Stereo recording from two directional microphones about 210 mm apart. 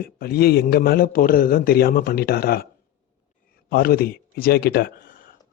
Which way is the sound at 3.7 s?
45° left (ahead or behind).